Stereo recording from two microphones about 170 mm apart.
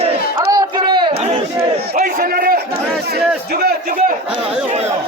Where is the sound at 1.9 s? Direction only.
55° right (ahead or behind).